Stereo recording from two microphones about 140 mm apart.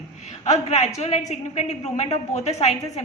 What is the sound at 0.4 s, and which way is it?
A woman's voice, 55° left (ahead or behind).